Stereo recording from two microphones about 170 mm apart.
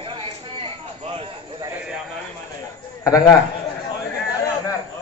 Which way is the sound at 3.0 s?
20° left (ahead or behind).